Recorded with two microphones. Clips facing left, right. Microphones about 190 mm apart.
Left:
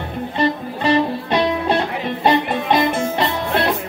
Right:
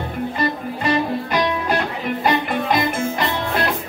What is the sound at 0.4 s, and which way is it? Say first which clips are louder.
Music: left 6 dB; 30° left (ahead or behind).